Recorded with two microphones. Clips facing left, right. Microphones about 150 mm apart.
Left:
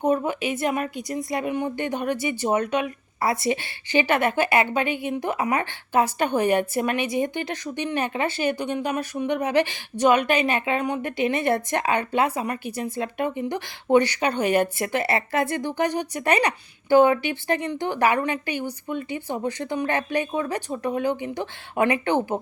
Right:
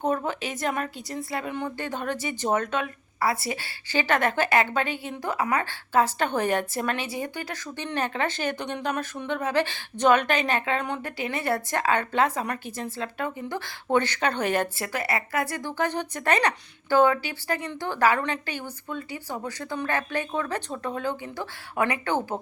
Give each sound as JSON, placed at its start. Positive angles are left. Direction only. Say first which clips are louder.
{"t": 0.0, "sound": "a woman's voice", "louder": "left 4 dB", "side_deg": 15}
{"t": 11.2, "sound": "a woman's voice", "louder": "left 6 dB", "side_deg": 20}